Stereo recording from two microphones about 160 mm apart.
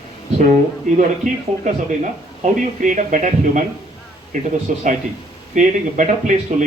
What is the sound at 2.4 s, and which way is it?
A man's voice, 50° right (ahead or behind).